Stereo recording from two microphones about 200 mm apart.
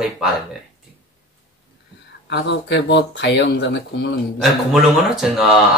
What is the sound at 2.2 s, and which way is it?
Speech, 60° left (ahead or behind).